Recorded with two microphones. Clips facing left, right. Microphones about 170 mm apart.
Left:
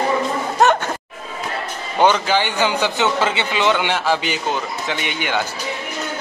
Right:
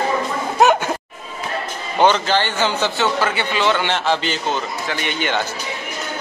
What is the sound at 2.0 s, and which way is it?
A man's voice, 10° left (ahead or behind).